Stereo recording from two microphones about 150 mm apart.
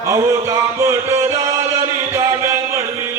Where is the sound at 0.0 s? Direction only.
20° right (ahead or behind).